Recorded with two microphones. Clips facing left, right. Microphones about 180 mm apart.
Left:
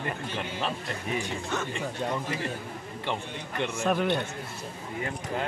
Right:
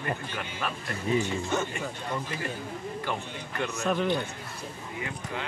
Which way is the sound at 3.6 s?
25° left (ahead or behind).